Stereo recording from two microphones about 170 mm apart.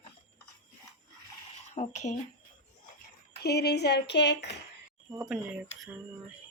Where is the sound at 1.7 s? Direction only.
45° left (ahead or behind).